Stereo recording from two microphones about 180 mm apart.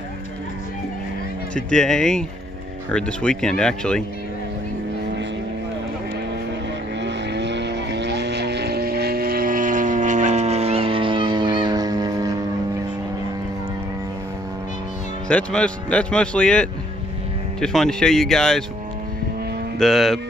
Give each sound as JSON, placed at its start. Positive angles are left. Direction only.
{"t": 1.5, "sound": "speech", "side_deg": 5}
{"t": 7.0, "sound": "vehicle", "side_deg": -75}
{"t": 15.2, "sound": "speech", "side_deg": 5}
{"t": 19.8, "sound": "speech", "side_deg": 0}